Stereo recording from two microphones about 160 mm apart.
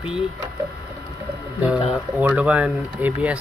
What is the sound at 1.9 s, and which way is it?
Speech, 10° right (ahead or behind).